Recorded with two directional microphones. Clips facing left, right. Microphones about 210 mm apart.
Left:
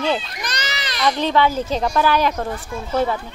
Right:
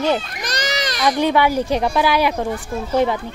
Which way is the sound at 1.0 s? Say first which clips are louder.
Right 1 dB; 10° right (ahead or behind).